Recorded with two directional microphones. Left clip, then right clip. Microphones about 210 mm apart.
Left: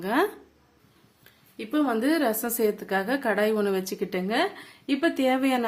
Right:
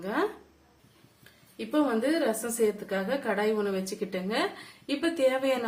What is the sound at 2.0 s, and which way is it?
A woman's voice, 50° left (ahead or behind).